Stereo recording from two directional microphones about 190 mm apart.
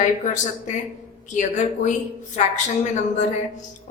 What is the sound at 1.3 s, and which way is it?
A woman's voice, 40° left (ahead or behind).